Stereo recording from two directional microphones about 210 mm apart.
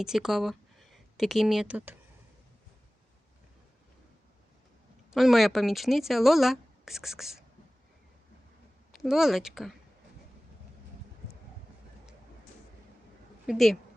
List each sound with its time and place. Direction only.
0.0 s speech: centre (ahead or behind)
5.1 s speech: centre (ahead or behind)
8.9 s speech: centre (ahead or behind)
13.5 s speech: centre (ahead or behind)